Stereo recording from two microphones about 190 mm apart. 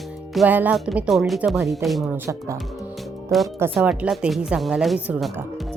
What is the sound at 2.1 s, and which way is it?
Speech, 15° right (ahead or behind).